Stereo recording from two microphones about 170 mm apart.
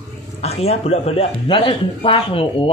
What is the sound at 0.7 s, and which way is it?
Speech, 35° left (ahead or behind).